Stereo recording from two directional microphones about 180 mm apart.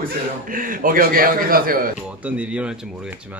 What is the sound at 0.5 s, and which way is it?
A man's voice, 50° right (ahead or behind).